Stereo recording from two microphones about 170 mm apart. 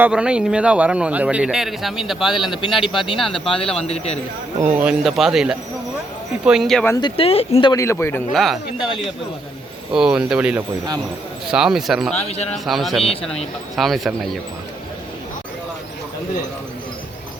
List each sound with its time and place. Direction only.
0.0 s speech: 5° right (ahead or behind)
3.8 s speech: 40° left (ahead or behind)
4.6 s speech: 10° right (ahead or behind)
6.8 s speech: 20° left (ahead or behind)
7.2 s speech: 35° left (ahead or behind)
7.7 s a man's voice: 15° left (ahead or behind)
8.3 s speech: centre (ahead or behind)
12.1 s speech: 40° left (ahead or behind)
12.5 s speech: centre (ahead or behind)